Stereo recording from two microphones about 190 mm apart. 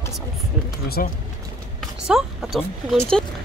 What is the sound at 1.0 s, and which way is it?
Speech, 50° left (ahead or behind).